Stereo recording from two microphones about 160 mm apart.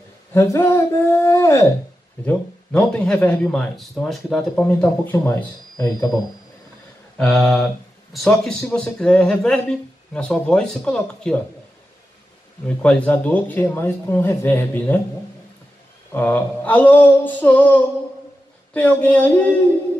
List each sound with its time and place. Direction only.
0.3 s speech: 15° left (ahead or behind)
2.2 s a man's voice: 5° left (ahead or behind)
5.3 s speech: 20° left (ahead or behind)
7.2 s a man's voice: centre (ahead or behind)
12.6 s speech: 5° left (ahead or behind)
16.1 s speech: 10° left (ahead or behind)